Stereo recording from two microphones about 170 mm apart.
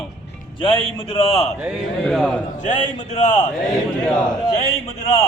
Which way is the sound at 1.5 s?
5° right (ahead or behind).